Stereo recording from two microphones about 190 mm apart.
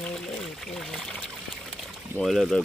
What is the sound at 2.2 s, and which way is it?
Speech, centre (ahead or behind).